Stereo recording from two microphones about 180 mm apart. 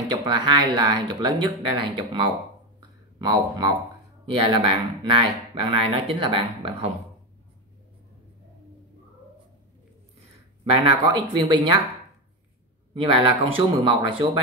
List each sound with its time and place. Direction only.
0.2 s speech: 25° right (ahead or behind)
10.6 s speech: 30° right (ahead or behind)
12.9 s speech: 30° right (ahead or behind)